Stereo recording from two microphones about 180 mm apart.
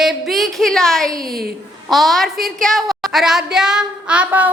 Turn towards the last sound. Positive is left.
turn(degrees=-10)  # may be behind; listen again after turning